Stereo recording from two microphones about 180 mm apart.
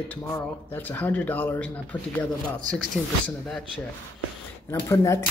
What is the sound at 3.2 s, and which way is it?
Speech, centre (ahead or behind).